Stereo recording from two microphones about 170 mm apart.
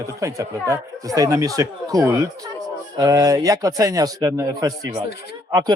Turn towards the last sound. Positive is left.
turn(degrees=-20)  # may be behind; listen again after turning